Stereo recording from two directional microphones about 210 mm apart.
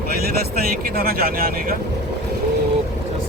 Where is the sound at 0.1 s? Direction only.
45° right (ahead or behind).